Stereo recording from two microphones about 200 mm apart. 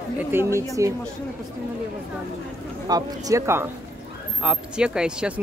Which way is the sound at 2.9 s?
20° right (ahead or behind).